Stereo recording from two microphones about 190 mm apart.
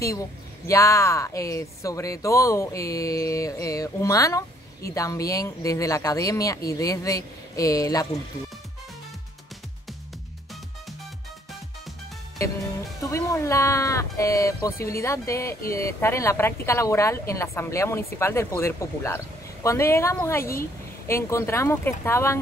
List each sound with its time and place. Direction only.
0.7 s speech: 15° left (ahead or behind)
13.0 s speech: 15° left (ahead or behind)